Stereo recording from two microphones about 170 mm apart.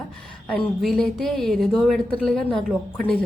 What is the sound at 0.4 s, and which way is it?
Speech, 5° left (ahead or behind).